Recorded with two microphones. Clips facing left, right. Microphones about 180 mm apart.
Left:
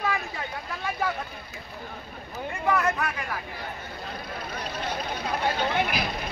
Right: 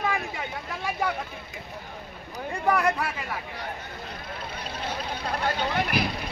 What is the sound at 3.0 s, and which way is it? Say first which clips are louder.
Speech: even; 30° right (ahead or behind).